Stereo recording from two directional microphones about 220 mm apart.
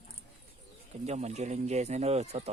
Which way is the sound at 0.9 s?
30° right (ahead or behind).